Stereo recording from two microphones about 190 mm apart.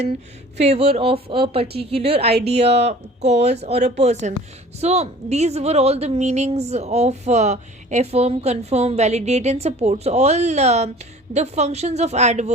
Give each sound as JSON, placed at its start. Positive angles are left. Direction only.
{"t": 0.5, "sound": "a woman's voice", "side_deg": -35}